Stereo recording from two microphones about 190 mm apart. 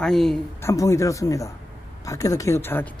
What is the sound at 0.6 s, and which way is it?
Speech, 15° left (ahead or behind).